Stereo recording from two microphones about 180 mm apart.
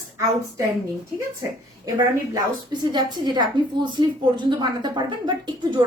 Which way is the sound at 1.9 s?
25° right (ahead or behind).